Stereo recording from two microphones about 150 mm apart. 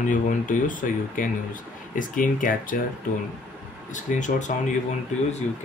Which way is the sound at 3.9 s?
55° left (ahead or behind).